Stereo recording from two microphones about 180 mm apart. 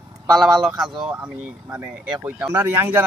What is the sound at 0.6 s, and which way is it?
Speech, centre (ahead or behind).